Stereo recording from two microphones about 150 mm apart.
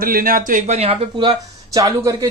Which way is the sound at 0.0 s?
70° right (ahead or behind).